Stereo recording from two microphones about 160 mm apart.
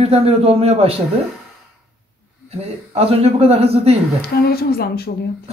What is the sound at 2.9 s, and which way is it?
Speech, 40° right (ahead or behind).